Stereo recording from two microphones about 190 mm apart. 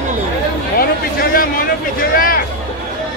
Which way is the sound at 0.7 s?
50° left (ahead or behind).